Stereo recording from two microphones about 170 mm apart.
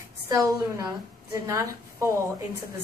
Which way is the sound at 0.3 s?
20° right (ahead or behind).